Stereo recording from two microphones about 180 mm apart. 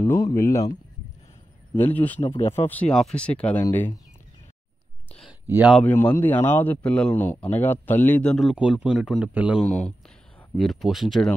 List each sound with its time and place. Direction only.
0.0 s speech: 15° left (ahead or behind)
1.8 s speech: 10° left (ahead or behind)
2.2 s speech: 30° left (ahead or behind)
2.5 s speech: 10° left (ahead or behind)
5.5 s speech: 10° right (ahead or behind)
5.8 s speech: 10° left (ahead or behind); by 9.7 s 5° right (ahead or behind)
9.7 s speech: 5° left (ahead or behind)